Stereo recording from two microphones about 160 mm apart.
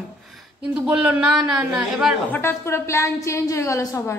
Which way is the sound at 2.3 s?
15° left (ahead or behind).